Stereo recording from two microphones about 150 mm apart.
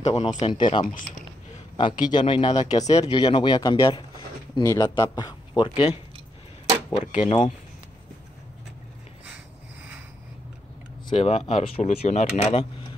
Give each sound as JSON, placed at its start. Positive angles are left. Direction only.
{"t": 0.0, "sound": "speech", "side_deg": 45}
{"t": 0.3, "sound": "speech", "side_deg": 30}
{"t": 7.1, "sound": "speech", "side_deg": 50}
{"t": 11.1, "sound": "speech", "side_deg": 40}